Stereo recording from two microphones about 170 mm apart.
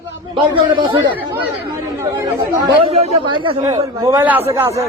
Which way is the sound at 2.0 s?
15° right (ahead or behind).